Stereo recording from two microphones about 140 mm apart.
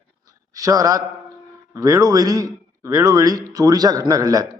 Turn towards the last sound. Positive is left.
turn(degrees=-25)  # may be behind; listen again after turning